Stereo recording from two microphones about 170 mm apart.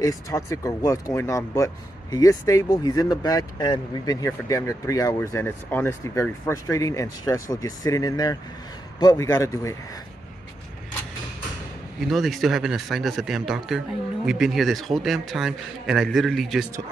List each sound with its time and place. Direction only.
0.0 s speech: 20° left (ahead or behind)
12.0 s speech: centre (ahead or behind)